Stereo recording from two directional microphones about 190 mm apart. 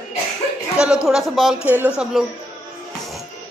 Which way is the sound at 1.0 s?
Centre (ahead or behind).